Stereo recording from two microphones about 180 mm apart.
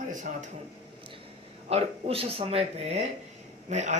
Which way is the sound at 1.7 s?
35° right (ahead or behind).